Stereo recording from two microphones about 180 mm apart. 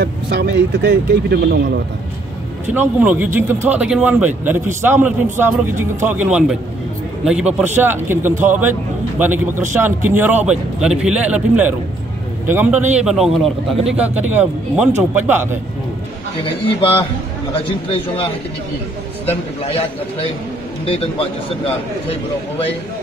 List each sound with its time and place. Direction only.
0.0 s speech: 70° right (ahead or behind)
2.7 s a man's voice: 10° right (ahead or behind)
19.6 s a man's voice: 35° left (ahead or behind)